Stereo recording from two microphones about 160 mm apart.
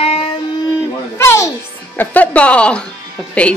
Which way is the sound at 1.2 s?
15° left (ahead or behind).